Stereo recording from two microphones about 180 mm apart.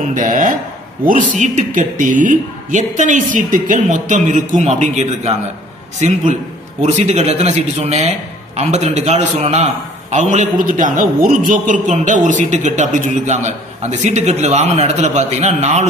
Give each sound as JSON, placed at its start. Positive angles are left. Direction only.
{"t": 0.0, "sound": "a man's voice", "side_deg": -45}